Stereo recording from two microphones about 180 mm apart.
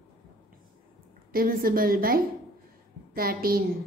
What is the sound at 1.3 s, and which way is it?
A woman's voice, 55° right (ahead or behind).